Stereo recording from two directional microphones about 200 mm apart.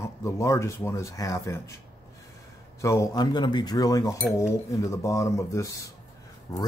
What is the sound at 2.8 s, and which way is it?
Speech, 15° left (ahead or behind).